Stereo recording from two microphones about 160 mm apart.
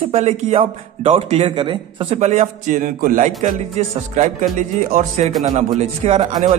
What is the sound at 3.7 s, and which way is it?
A man's voice, 45° right (ahead or behind).